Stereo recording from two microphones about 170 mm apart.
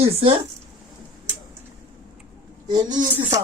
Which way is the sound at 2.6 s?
25° right (ahead or behind).